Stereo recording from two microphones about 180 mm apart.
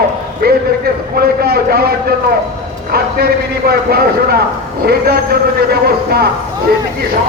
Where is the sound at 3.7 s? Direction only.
60° right (ahead or behind).